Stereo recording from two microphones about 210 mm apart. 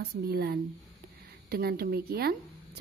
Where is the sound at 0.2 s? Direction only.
50° right (ahead or behind).